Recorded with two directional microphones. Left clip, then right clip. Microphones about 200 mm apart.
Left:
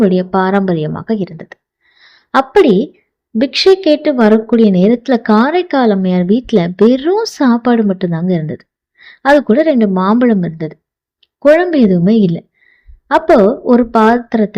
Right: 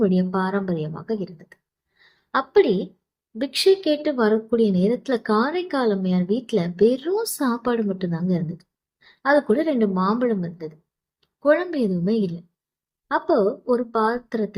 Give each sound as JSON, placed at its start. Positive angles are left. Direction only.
{"t": 0.0, "sound": "a woman's voice", "side_deg": 40}
{"t": 2.0, "sound": "a sound", "side_deg": 40}
{"t": 3.3, "sound": "a woman's voice", "side_deg": 40}